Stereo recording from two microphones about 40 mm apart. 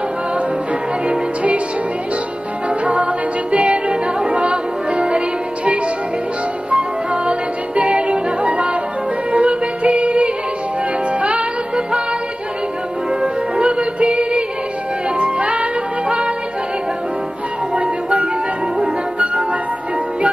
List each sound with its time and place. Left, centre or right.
1.0 s music: right
2.8 s music: right
6.7 s music: right
13.2 s music: right
17.7 s music: right